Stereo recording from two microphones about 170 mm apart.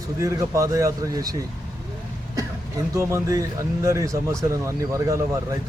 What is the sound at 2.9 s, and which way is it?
Speech, 20° right (ahead or behind).